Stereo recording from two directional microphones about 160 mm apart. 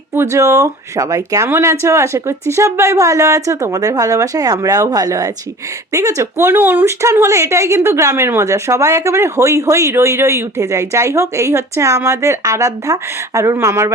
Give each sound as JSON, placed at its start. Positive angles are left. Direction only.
{"t": 0.1, "sound": "speech", "side_deg": -15}